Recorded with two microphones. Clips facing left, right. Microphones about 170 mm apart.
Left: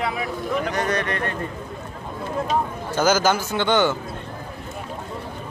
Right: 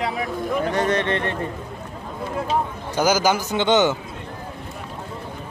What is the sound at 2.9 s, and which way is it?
A man's voice, 10° right (ahead or behind).